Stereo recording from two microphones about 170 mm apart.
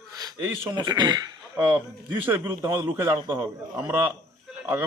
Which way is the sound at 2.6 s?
30° right (ahead or behind).